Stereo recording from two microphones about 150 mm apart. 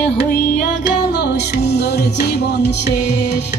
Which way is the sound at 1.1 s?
90° left.